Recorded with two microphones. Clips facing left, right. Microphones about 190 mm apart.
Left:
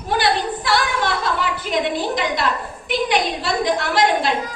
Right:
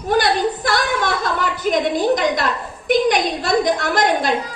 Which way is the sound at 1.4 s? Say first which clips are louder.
Right 3 dB; 45° right (ahead or behind).